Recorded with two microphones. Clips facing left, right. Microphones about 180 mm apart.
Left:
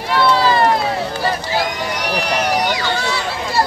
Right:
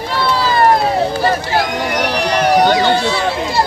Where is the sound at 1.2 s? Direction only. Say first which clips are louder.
Right 4 dB; 60° right (ahead or behind).